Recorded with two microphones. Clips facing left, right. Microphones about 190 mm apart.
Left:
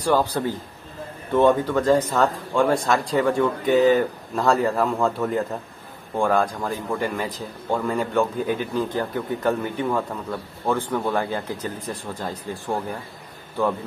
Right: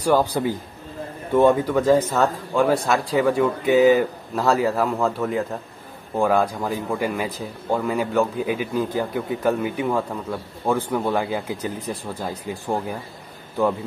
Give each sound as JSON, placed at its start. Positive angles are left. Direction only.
{"t": 0.0, "sound": "a man's voice", "side_deg": -10}